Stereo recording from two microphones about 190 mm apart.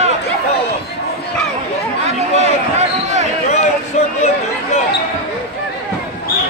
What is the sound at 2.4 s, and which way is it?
Basketball bounce, 35° right (ahead or behind).